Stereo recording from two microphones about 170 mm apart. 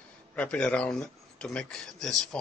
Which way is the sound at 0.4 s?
5° left (ahead or behind).